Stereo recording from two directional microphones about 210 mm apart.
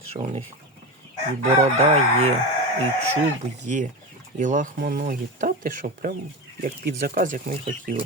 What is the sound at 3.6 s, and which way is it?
Speech, 35° right (ahead or behind).